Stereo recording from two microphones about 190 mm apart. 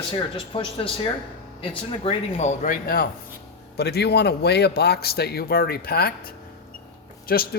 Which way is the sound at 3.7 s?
60° left (ahead or behind).